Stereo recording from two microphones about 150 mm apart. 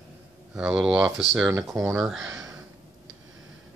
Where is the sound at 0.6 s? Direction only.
5° right (ahead or behind).